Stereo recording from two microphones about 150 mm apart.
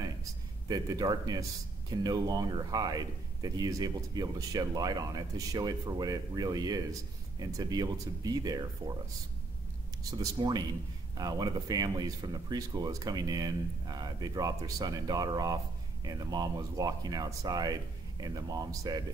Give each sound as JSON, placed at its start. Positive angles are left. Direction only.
{"t": 0.7, "sound": "speech", "side_deg": -25}
{"t": 10.1, "sound": "speech", "side_deg": -25}